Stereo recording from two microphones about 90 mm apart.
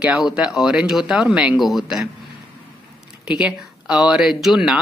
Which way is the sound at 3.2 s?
10° right (ahead or behind).